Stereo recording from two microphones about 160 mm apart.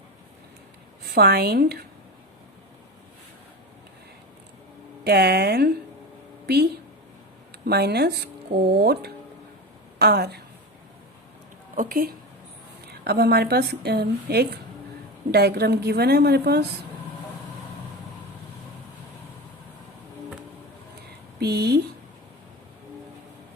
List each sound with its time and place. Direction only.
1.0 s a woman's voice: 80° right
5.0 s a woman's voice: 85° right
7.6 s a woman's voice: 85° right
11.7 s speech: 60° right (ahead or behind)
13.1 s a woman's voice: 85° right
21.3 s speech: 80° right